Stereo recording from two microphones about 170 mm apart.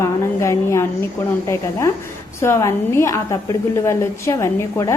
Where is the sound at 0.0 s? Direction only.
15° left (ahead or behind).